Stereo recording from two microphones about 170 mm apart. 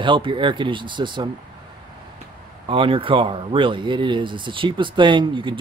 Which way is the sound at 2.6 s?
30° right (ahead or behind).